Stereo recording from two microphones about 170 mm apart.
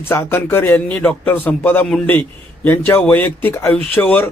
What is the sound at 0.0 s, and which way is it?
Speech, 15° left (ahead or behind).